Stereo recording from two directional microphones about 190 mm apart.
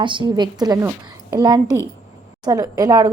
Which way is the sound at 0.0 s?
25° right (ahead or behind).